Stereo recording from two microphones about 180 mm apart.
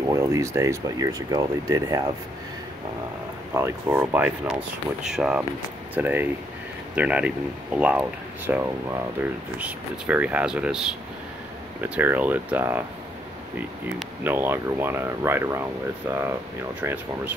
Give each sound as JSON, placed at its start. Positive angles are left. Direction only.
{"t": 0.1, "sound": "speech", "side_deg": -15}
{"t": 3.5, "sound": "speech", "side_deg": -15}
{"t": 11.8, "sound": "speech", "side_deg": -10}
{"t": 14.2, "sound": "speech", "side_deg": -10}